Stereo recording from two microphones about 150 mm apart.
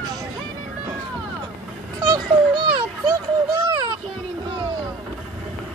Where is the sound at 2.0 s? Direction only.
25° right (ahead or behind).